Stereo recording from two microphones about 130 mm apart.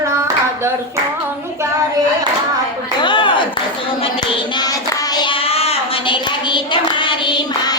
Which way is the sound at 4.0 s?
40° left (ahead or behind).